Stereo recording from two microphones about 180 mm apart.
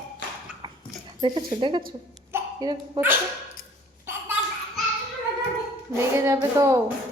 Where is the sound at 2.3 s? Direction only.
20° right (ahead or behind).